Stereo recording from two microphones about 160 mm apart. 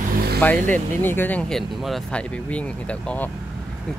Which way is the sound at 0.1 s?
70° right (ahead or behind).